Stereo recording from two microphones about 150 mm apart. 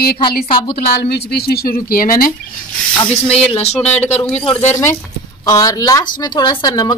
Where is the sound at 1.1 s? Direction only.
90° left; by 2.3 s 75° left (ahead or behind).